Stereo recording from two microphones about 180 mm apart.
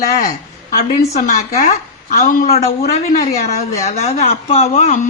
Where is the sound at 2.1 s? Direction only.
45° left (ahead or behind).